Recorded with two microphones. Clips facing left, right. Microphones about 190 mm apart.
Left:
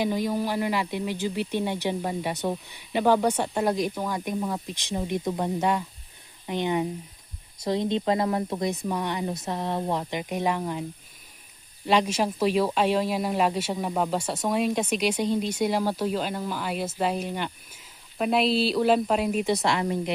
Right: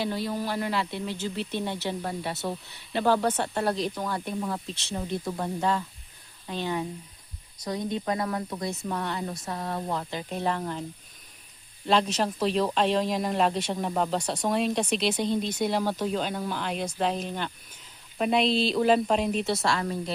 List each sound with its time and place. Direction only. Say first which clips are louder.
0.0 s speech: left 4 dB; 15° left (ahead or behind)
11.9 s speech: left 1 dB; 10° left (ahead or behind)